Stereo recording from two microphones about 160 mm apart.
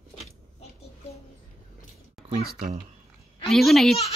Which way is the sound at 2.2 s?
Centre (ahead or behind).